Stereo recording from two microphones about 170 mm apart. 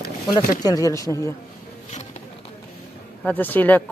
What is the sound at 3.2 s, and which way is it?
Speech, 10° left (ahead or behind).